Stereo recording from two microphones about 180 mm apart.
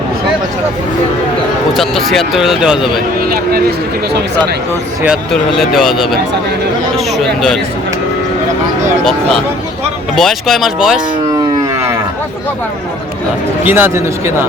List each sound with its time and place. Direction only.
1.7 s speech: centre (ahead or behind)
3.2 s a sound: 55° right (ahead or behind)
5.0 s speech: centre (ahead or behind)
10.2 s speech: centre (ahead or behind)
13.7 s speech: 10° right (ahead or behind)